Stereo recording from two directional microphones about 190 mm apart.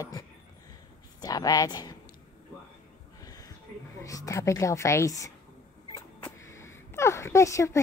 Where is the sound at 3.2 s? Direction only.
20° left (ahead or behind).